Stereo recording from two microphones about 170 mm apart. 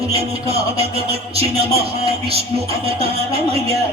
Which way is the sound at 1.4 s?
35° right (ahead or behind).